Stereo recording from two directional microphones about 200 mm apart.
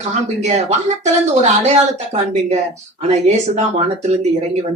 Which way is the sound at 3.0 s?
35° right (ahead or behind).